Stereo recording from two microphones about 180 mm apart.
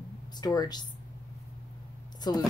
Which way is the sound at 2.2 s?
20° left (ahead or behind).